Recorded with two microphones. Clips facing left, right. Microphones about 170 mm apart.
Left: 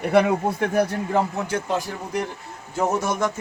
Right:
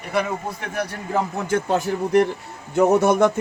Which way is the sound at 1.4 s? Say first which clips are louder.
Right 4 dB; 60° right (ahead or behind).